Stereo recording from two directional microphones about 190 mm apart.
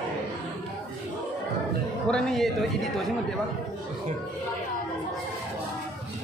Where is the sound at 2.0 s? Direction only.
5° left (ahead or behind).